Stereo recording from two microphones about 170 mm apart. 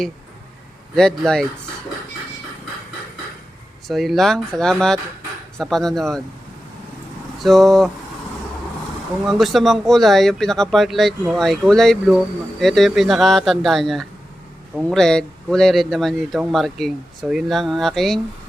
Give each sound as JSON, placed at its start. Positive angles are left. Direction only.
{"t": 0.9, "sound": "speech", "side_deg": 5}
{"t": 3.8, "sound": "speech", "side_deg": 0}
{"t": 7.4, "sound": "speech", "side_deg": 0}
{"t": 9.2, "sound": "speech", "side_deg": 0}